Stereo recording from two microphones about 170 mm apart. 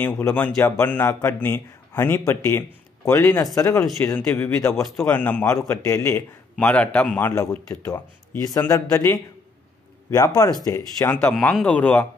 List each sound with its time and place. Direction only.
0.0 s a man's voice: 10° left (ahead or behind)
3.8 s a man's voice: 5° left (ahead or behind)
4.6 s a man's voice: 15° left (ahead or behind)